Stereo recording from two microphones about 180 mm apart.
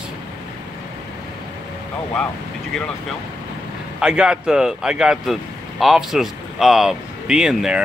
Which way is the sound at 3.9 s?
5° right (ahead or behind).